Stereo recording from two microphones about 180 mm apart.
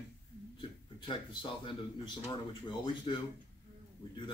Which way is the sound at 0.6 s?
25° left (ahead or behind).